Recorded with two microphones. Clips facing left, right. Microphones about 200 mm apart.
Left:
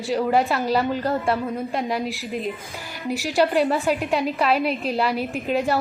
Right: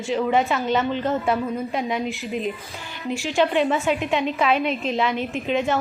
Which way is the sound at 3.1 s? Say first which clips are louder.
Even; 40° left (ahead or behind).